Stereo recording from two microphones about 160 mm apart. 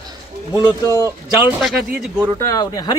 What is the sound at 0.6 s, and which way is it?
Speech, 20° left (ahead or behind).